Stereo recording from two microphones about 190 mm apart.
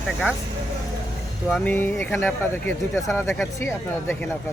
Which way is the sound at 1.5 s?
5° left (ahead or behind).